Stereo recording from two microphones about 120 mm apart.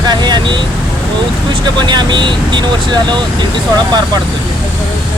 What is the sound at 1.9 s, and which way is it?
Speech, 40° right (ahead or behind).